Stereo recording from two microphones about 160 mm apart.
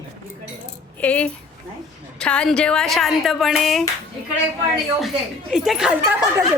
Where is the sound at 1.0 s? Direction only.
10° left (ahead or behind).